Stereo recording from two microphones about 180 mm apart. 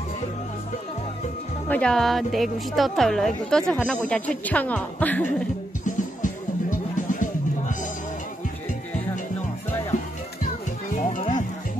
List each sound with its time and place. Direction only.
1.7 s a woman's voice: 5° left (ahead or behind)
5.9 s music: 45° left (ahead or behind)
11.0 s music: 40° left (ahead or behind)